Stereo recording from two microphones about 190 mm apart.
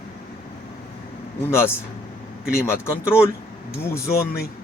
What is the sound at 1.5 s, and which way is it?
Speech, 15° left (ahead or behind).